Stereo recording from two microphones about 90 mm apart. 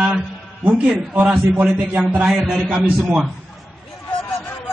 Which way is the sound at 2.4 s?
5° left (ahead or behind).